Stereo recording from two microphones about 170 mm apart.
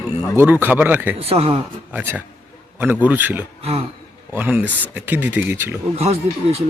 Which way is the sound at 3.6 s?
35° right (ahead or behind).